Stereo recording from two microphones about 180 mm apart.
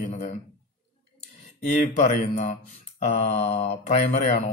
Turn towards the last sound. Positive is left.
turn(degrees=40)  # may be behind; listen again after turning